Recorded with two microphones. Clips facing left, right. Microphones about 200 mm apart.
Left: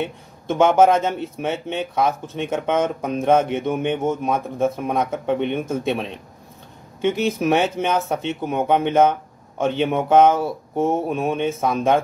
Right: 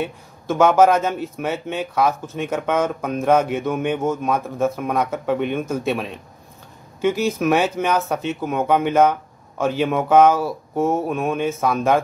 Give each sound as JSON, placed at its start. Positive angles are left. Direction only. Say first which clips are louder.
{"t": 0.0, "sound": "a man's voice", "louder": "even", "side_deg": 25}